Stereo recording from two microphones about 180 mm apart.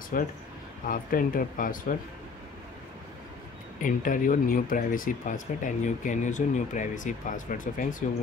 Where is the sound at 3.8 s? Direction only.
50° left (ahead or behind).